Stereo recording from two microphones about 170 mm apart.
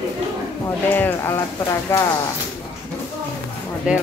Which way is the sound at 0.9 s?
15° left (ahead or behind).